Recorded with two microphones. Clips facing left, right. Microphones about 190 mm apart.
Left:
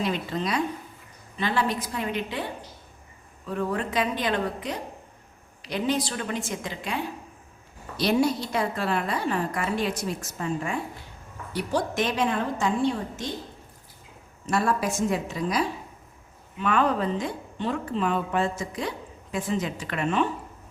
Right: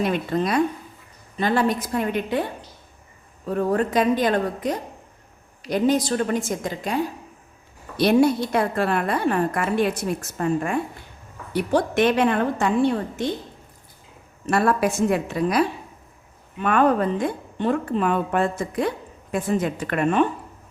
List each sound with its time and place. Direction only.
0.0 s speech: 55° right (ahead or behind)
3.4 s speech: 40° right (ahead or behind)
7.9 s a woman's voice: 55° right (ahead or behind)
14.4 s a woman's voice: 60° right (ahead or behind)